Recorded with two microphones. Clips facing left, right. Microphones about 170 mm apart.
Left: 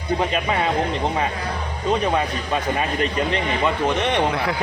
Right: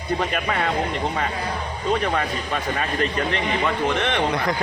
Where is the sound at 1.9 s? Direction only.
20° left (ahead or behind).